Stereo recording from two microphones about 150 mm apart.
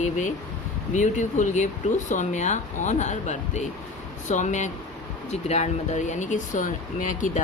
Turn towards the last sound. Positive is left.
turn(degrees=60)  # may be behind; listen again after turning